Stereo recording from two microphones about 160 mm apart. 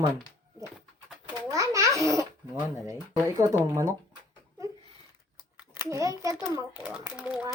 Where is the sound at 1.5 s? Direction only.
20° right (ahead or behind).